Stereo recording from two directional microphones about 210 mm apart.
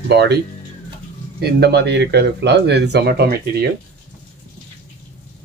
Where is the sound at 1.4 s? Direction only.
50° right (ahead or behind).